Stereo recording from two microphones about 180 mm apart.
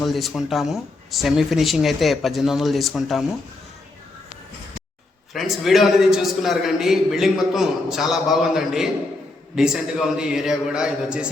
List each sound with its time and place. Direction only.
0.0 s a man's voice: centre (ahead or behind)
5.3 s a man's voice: centre (ahead or behind)